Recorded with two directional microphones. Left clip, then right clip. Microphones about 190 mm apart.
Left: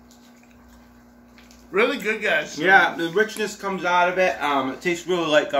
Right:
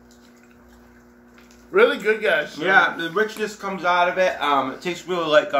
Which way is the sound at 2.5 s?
25° left (ahead or behind).